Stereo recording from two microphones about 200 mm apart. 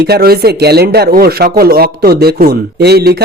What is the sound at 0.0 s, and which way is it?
Speech, 50° right (ahead or behind).